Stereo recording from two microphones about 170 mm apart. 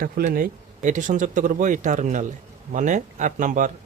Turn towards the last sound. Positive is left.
turn(degrees=-50)  # may be behind; listen again after turning